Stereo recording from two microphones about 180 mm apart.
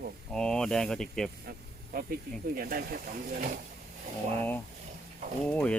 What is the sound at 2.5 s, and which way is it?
Speech, 55° right (ahead or behind).